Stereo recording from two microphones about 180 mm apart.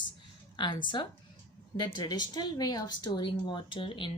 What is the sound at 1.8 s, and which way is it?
Speech, 25° left (ahead or behind).